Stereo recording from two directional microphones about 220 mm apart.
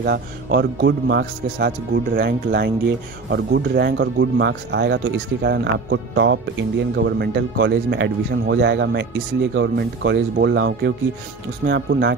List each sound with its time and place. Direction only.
0.0 s speech: 50° right (ahead or behind)